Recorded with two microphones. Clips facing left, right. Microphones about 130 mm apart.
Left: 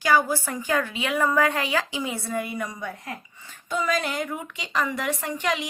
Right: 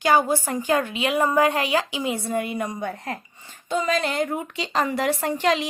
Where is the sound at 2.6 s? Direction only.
50° right (ahead or behind).